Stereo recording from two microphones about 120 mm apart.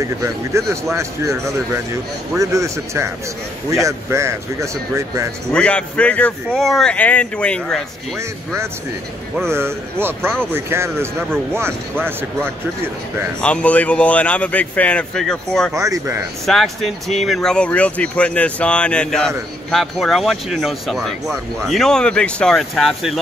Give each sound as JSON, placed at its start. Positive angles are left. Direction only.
{"t": 0.0, "sound": "speech", "side_deg": -25}
{"t": 5.5, "sound": "speech", "side_deg": 10}
{"t": 9.5, "sound": "speech", "side_deg": -20}
{"t": 13.4, "sound": "speech", "side_deg": 10}
{"t": 15.7, "sound": "speech", "side_deg": -25}
{"t": 16.4, "sound": "speech", "side_deg": 0}